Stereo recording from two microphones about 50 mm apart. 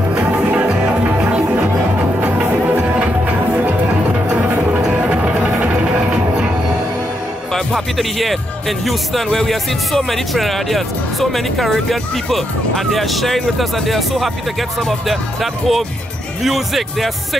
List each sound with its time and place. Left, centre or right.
0.8 s music: right
7.5 s speech: centre